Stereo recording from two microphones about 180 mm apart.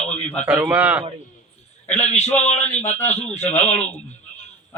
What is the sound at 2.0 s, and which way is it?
A man's voice, 35° left (ahead or behind).